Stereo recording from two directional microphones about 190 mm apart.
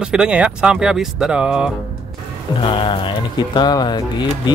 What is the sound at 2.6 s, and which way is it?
Speech, 25° left (ahead or behind).